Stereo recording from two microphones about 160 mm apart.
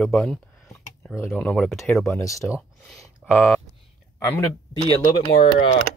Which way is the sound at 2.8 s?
5° left (ahead or behind).